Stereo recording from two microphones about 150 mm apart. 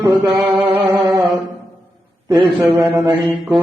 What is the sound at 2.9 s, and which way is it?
Mantra, 20° right (ahead or behind).